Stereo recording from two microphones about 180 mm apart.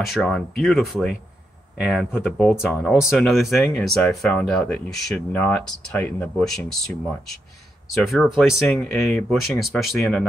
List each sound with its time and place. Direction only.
0.1 s speech: centre (ahead or behind)